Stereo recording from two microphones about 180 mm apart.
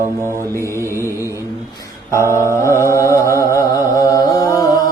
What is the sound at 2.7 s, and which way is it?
Mantra, 15° left (ahead or behind).